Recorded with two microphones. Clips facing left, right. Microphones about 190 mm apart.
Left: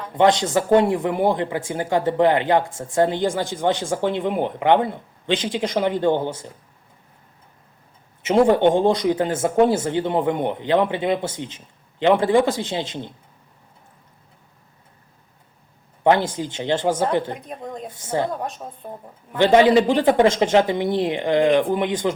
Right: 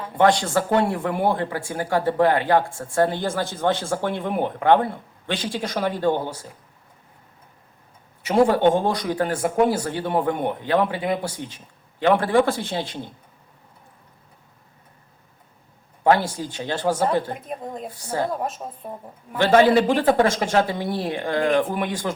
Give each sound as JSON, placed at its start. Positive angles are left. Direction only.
{"t": 0.2, "sound": "speech", "side_deg": 20}
{"t": 8.2, "sound": "speech", "side_deg": 20}
{"t": 16.0, "sound": "speech", "side_deg": 20}
{"t": 17.4, "sound": "a woman's voice", "side_deg": -5}
{"t": 17.8, "sound": "speech", "side_deg": 20}
{"t": 18.4, "sound": "a woman's voice", "side_deg": -5}
{"t": 19.4, "sound": "speech", "side_deg": 15}